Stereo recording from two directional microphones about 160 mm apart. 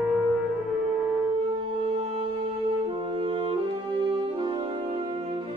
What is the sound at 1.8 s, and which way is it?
Music, 30° right (ahead or behind).